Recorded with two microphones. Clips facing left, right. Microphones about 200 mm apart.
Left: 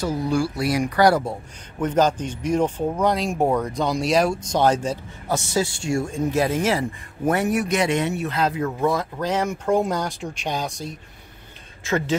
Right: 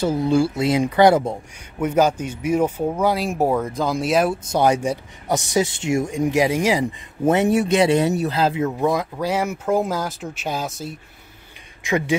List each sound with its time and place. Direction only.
0.0 s speech: 25° right (ahead or behind)
1.8 s speech: 10° right (ahead or behind)